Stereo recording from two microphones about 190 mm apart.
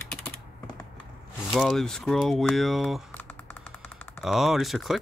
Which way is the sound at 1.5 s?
Centre (ahead or behind).